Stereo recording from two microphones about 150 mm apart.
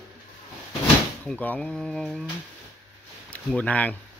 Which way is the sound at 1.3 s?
5° left (ahead or behind).